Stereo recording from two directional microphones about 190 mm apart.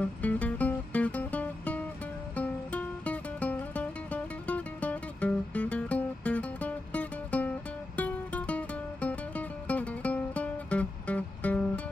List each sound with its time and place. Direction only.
0.0 s music: 10° left (ahead or behind)